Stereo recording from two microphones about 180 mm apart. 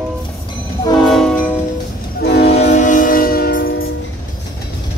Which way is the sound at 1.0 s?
5° left (ahead or behind).